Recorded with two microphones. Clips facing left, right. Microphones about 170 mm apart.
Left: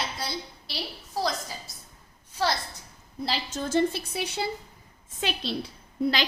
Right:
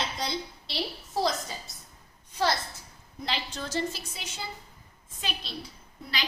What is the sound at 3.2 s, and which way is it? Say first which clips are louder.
A woman's voice: left 4 dB; 40° left (ahead or behind).